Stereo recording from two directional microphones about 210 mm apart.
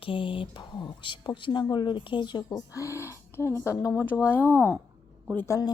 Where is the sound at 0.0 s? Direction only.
25° left (ahead or behind); by 4.2 s 10° left (ahead or behind).